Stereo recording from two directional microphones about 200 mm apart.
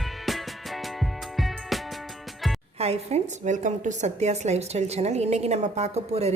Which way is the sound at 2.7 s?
30° right (ahead or behind).